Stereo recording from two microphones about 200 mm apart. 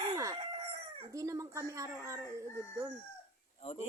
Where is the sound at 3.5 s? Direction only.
30° left (ahead or behind).